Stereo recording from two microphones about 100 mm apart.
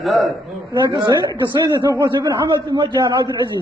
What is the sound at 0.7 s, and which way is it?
A man's voice, 45° right (ahead or behind).